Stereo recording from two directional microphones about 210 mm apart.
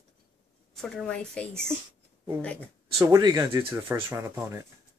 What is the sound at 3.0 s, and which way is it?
Speech, 15° right (ahead or behind).